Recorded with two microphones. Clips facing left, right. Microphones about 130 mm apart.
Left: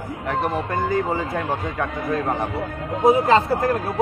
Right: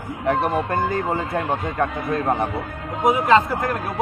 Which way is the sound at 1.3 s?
20° right (ahead or behind).